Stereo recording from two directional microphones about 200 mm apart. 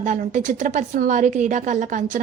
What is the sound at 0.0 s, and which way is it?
A woman's voice, 40° right (ahead or behind).